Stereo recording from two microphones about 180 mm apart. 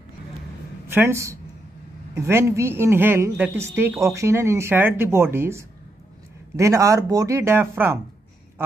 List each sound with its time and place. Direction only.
0.9 s a woman's voice: 15° right (ahead or behind)